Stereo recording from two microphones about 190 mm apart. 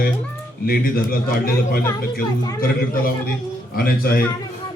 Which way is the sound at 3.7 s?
50° left (ahead or behind).